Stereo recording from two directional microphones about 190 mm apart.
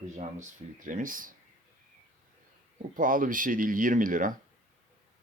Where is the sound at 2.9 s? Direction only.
45° right (ahead or behind).